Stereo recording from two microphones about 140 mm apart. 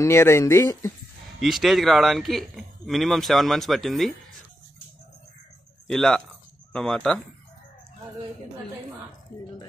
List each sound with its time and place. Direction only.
0.0 s speech: 20° left (ahead or behind)
1.4 s speech: centre (ahead or behind)
5.9 s speech: 5° left (ahead or behind)